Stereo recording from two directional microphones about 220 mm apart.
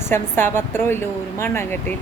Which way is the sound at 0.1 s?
10° left (ahead or behind).